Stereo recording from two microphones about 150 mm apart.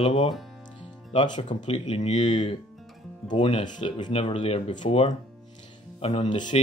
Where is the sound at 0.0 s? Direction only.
40° left (ahead or behind).